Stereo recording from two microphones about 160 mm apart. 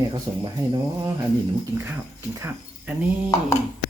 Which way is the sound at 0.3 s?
45° right (ahead or behind).